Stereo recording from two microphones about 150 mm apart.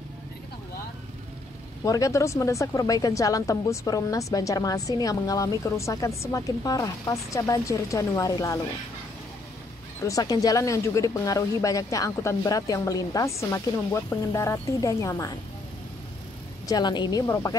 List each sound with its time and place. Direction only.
1.9 s speech: 20° left (ahead or behind)
10.0 s speech: 25° left (ahead or behind)
16.6 s speech: 30° left (ahead or behind)